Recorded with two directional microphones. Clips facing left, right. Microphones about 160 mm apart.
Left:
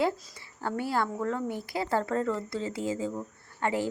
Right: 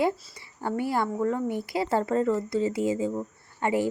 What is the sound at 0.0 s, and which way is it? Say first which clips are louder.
Speech: right 2 dB; 20° right (ahead or behind).